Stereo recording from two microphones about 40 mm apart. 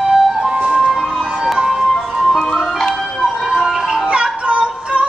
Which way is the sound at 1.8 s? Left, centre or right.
Centre.